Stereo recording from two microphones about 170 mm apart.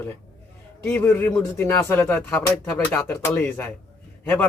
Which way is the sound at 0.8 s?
15° left (ahead or behind).